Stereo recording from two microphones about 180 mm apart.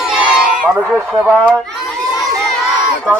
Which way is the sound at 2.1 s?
Centre (ahead or behind).